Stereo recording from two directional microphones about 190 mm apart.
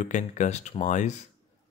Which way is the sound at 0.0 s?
40° left (ahead or behind).